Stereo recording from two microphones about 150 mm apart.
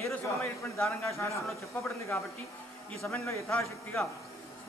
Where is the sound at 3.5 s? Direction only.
5° left (ahead or behind).